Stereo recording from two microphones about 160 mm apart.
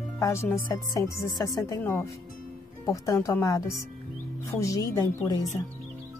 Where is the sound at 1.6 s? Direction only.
15° left (ahead or behind).